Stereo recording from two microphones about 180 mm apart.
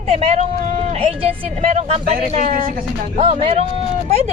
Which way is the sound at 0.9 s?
30° right (ahead or behind).